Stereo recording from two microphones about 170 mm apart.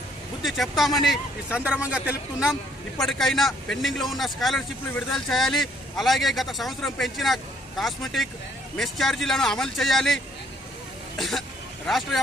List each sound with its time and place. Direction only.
0.4 s a man's voice: centre (ahead or behind)
11.2 s a man's voice: centre (ahead or behind)